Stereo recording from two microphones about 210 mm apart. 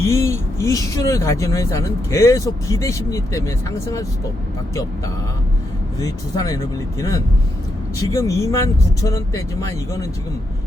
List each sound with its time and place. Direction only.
0.0 s speech: 15° left (ahead or behind)